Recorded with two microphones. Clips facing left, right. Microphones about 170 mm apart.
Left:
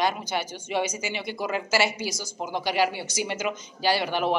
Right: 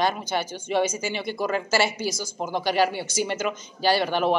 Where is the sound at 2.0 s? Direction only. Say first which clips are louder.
Right 3 dB; 50° right (ahead or behind).